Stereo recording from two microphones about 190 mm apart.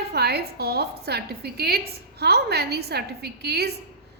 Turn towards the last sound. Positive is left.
turn(degrees=-60)  # may be behind; listen again after turning